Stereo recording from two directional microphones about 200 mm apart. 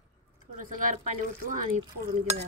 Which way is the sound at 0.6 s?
40° right (ahead or behind).